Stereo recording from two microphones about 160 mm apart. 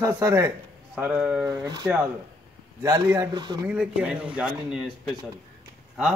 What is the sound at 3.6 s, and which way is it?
Speech, 5° right (ahead or behind).